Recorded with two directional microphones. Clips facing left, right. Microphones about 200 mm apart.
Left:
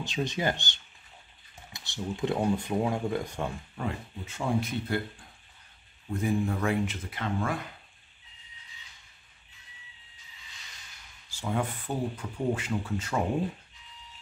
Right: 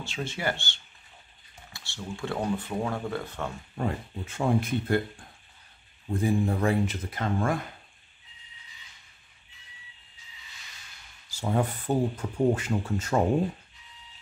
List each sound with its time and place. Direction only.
0.0 s speech: 20° left (ahead or behind)
3.8 s speech: 45° right (ahead or behind)
6.2 s speech: 35° right (ahead or behind)
11.2 s a sound: 40° right (ahead or behind)
12.2 s speech: 45° right (ahead or behind)